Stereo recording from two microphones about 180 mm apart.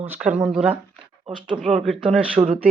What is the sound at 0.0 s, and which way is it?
Speech, 10° right (ahead or behind).